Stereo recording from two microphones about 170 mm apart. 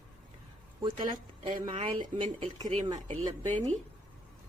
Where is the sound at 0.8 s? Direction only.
30° right (ahead or behind).